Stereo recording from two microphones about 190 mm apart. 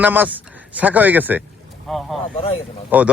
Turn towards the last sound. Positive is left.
turn(degrees=-10)  # may be behind; listen again after turning